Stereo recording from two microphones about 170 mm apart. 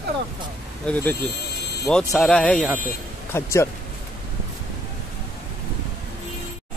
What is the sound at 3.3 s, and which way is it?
Speech, 15° left (ahead or behind).